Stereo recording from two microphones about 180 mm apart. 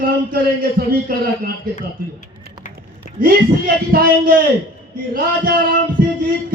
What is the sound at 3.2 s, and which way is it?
A man's voice, 50° right (ahead or behind).